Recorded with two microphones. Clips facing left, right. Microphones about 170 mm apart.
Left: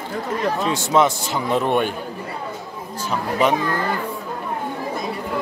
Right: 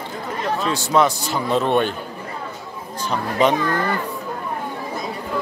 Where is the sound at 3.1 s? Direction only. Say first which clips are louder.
Right 1 dB; 5° left (ahead or behind).